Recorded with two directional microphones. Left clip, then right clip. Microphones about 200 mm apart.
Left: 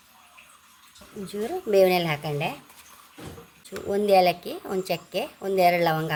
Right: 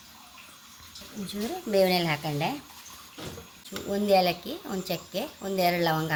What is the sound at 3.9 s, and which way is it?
A woman's voice, 50° left (ahead or behind).